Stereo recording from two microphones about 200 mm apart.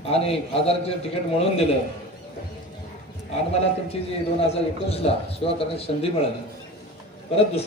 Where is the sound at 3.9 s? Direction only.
30° left (ahead or behind).